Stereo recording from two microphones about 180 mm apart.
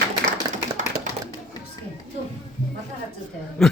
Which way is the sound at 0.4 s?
20° right (ahead or behind).